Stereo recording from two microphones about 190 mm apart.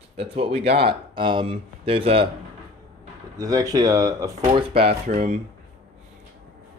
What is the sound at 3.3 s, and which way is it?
Speech, 15° right (ahead or behind).